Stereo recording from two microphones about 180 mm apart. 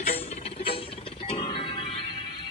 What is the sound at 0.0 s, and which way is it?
Music, 35° left (ahead or behind).